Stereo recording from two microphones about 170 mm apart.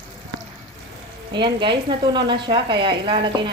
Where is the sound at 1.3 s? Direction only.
25° right (ahead or behind).